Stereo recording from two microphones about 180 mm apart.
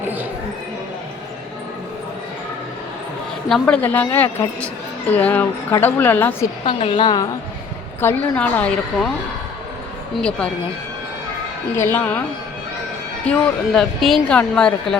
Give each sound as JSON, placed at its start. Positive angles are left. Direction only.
{"t": 3.5, "sound": "a woman's voice", "side_deg": 5}
{"t": 6.7, "sound": "a woman's voice", "side_deg": 30}
{"t": 8.0, "sound": "a woman's voice", "side_deg": 10}
{"t": 10.2, "sound": "a woman's voice", "side_deg": 5}
{"t": 11.9, "sound": "a woman's voice", "side_deg": 10}
{"t": 13.2, "sound": "a woman's voice", "side_deg": 5}